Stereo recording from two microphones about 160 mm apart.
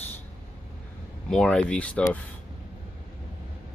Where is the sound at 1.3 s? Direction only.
5° left (ahead or behind).